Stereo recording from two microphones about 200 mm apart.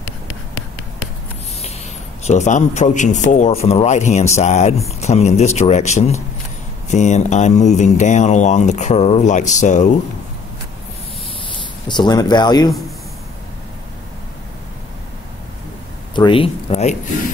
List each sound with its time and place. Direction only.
2.2 s speech: 35° left (ahead or behind)
11.9 s speech: 20° left (ahead or behind)
16.2 s speech: 25° left (ahead or behind)